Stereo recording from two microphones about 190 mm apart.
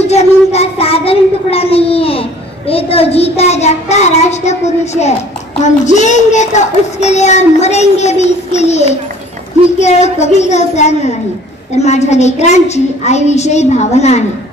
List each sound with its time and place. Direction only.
0.0 s child singing: 35° left (ahead or behind)
2.7 s a child's voice: 30° left (ahead or behind)